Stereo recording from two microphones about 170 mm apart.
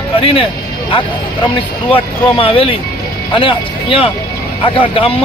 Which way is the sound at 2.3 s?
35° left (ahead or behind).